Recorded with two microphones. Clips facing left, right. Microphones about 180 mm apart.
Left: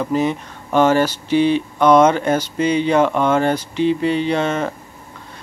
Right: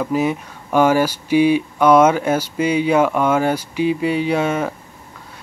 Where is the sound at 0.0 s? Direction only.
5° right (ahead or behind).